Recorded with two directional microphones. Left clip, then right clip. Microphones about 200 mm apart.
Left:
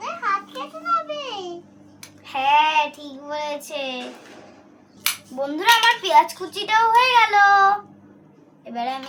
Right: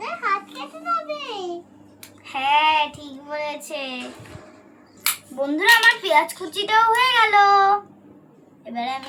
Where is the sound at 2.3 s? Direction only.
20° left (ahead or behind).